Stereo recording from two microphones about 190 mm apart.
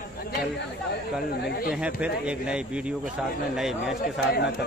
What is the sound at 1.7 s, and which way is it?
Speech, 5° right (ahead or behind).